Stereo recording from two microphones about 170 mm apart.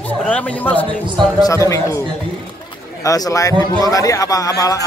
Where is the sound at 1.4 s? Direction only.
20° left (ahead or behind).